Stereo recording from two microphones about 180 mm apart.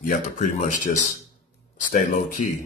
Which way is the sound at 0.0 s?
45° left (ahead or behind).